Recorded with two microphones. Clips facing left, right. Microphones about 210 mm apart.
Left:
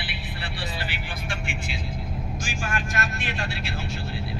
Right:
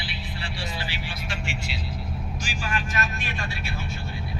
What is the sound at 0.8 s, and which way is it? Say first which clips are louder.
Vehicle: even; 55° left (ahead or behind).